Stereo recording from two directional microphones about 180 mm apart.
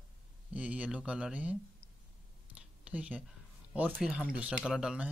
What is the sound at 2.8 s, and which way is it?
Speech, 5° right (ahead or behind).